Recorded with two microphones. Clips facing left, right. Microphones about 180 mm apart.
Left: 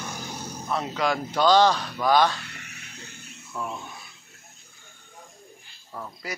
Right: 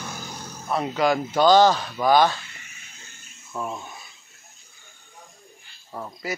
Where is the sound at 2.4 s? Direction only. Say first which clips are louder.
Left 4 dB; 70° left (ahead or behind).